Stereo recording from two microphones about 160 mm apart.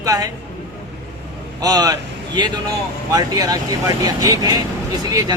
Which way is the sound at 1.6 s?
25° right (ahead or behind).